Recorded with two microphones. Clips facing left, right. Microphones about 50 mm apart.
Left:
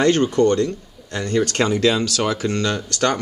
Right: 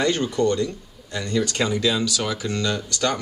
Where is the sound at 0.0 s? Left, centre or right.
Left.